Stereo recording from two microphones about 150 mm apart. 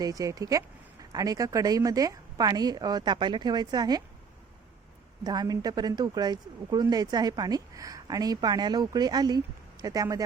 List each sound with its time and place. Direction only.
0.0 s speech: 25° right (ahead or behind)
5.2 s speech: 25° right (ahead or behind)